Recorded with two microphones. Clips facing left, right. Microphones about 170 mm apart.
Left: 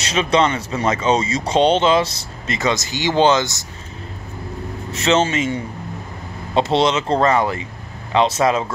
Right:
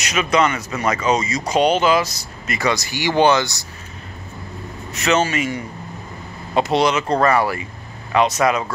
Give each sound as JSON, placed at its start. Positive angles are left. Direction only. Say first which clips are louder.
{"t": 0.0, "sound": "speech", "louder": "left 1 dB", "side_deg": 30}
{"t": 4.9, "sound": "speech", "louder": "left 1 dB", "side_deg": 25}